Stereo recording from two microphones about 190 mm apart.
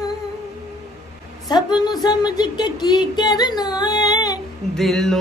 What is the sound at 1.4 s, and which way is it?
Speech, 20° left (ahead or behind).